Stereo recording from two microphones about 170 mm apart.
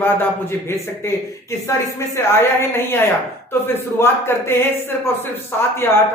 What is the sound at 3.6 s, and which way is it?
Speech, 15° left (ahead or behind).